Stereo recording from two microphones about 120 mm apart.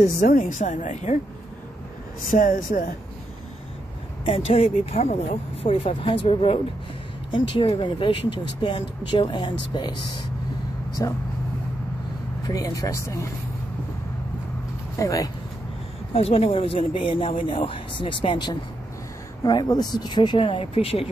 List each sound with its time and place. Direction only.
0.2 s speech: 90° left
2.3 s speech: 90° left
4.2 s speech: 55° left (ahead or behind)
11.0 s speech: 30° left (ahead or behind)
12.4 s speech: 30° left (ahead or behind)
15.0 s speech: 30° left (ahead or behind)
16.1 s speech: 55° left (ahead or behind)